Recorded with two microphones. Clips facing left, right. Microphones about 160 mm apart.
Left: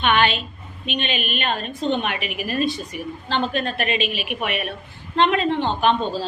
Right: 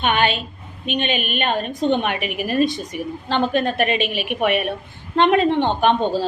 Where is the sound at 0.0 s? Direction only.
45° right (ahead or behind).